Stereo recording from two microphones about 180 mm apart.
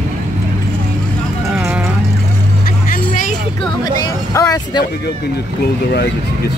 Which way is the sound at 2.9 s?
45° left (ahead or behind).